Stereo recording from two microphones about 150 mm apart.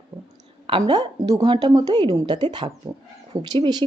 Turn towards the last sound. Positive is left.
turn(degrees=-30)  # may be behind; listen again after turning